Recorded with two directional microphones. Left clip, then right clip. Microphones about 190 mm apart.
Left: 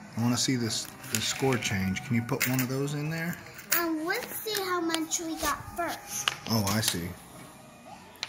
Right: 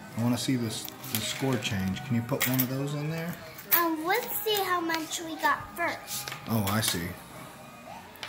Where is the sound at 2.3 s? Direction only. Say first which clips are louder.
Right 1 dB; 30° left (ahead or behind).